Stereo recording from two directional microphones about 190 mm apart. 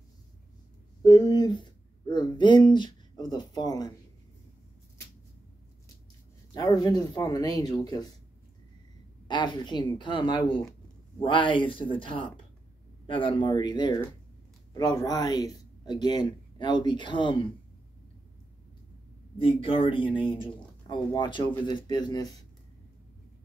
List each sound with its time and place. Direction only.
1.0 s speech: 20° left (ahead or behind)
6.5 s speech: 20° left (ahead or behind)
9.3 s speech: 25° left (ahead or behind)
19.3 s speech: 30° left (ahead or behind)